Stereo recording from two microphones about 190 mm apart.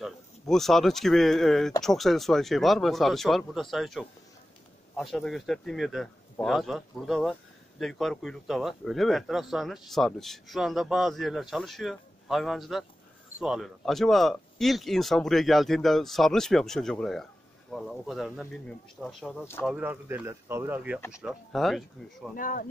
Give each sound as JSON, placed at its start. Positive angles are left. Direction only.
{"t": 0.0, "sound": "speech", "side_deg": 0}
{"t": 22.3, "sound": "speech", "side_deg": 45}